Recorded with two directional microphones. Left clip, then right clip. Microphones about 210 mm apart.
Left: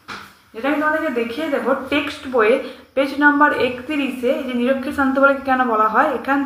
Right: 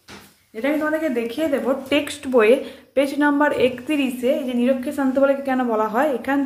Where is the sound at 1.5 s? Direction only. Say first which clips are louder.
Left 3 dB; 35° right (ahead or behind).